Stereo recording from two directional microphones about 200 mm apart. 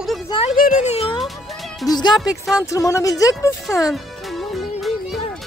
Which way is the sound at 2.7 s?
15° left (ahead or behind).